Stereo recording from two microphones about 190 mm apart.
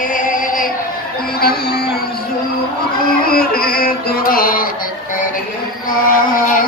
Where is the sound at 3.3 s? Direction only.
50° left (ahead or behind).